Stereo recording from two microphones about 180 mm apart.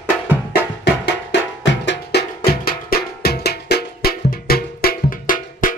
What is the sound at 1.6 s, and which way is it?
Music, 85° left.